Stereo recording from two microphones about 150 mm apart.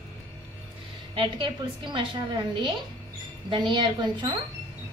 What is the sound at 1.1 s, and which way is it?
Speech, 35° right (ahead or behind).